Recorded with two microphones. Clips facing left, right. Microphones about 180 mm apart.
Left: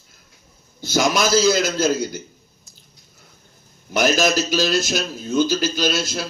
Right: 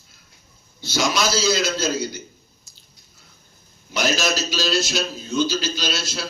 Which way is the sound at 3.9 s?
50° left (ahead or behind).